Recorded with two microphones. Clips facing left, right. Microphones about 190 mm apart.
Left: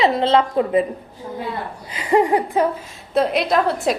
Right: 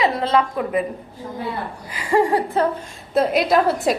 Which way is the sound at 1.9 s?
20° left (ahead or behind).